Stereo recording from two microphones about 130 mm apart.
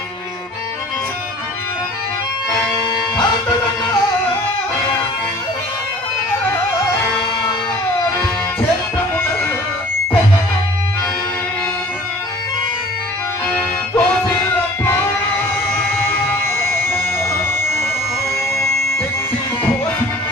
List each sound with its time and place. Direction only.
13.5 s music: 20° left (ahead or behind)